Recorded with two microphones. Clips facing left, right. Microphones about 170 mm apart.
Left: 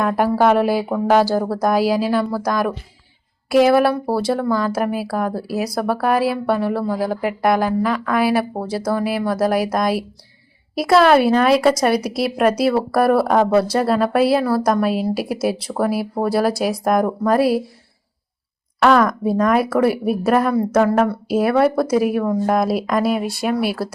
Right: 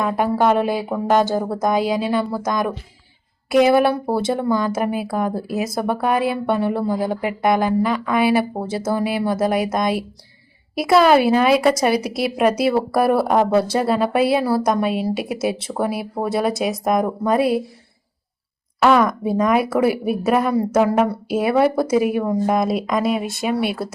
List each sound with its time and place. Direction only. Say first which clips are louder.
0.0 s speech: left 2 dB; 5° left (ahead or behind)
1.3 s speech: left 2 dB; 20° right (ahead or behind)
1.6 s speech: left 2 dB; 5° left (ahead or behind)
8.6 s speech: left 1 dB; 25° right (ahead or behind)
8.9 s speech: even; centre (ahead or behind)
18.8 s speech: left 1 dB; centre (ahead or behind)
22.2 s speech: left 1 dB; 10° right (ahead or behind)
22.5 s speech: left 1 dB; centre (ahead or behind)